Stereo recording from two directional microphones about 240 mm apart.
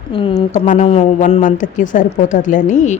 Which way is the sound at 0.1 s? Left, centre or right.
Left.